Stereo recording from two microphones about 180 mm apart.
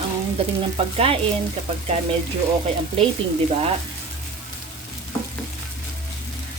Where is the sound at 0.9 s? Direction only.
30° right (ahead or behind).